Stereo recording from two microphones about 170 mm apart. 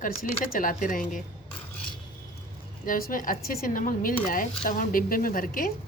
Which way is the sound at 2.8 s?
55° left (ahead or behind).